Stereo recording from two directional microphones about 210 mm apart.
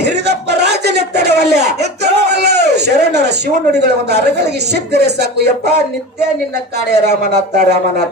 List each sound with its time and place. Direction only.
0.3 s a sound: 50° right (ahead or behind)
3.8 s speech: 50° right (ahead or behind)
6.9 s speech: 50° right (ahead or behind)